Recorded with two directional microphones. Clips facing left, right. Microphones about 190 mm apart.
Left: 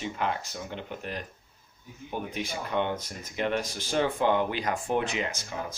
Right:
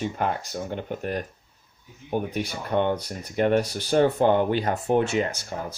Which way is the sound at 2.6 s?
45° right (ahead or behind).